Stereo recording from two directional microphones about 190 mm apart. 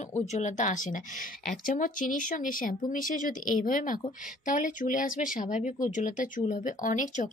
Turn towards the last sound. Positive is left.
turn(degrees=40)  # may be behind; listen again after turning